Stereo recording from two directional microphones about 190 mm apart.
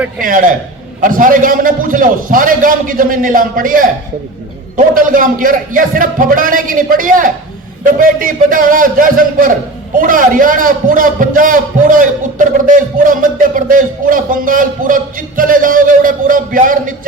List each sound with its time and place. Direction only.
0.2 s a man's voice: 45° right (ahead or behind)
4.9 s a man's voice: 45° right (ahead or behind)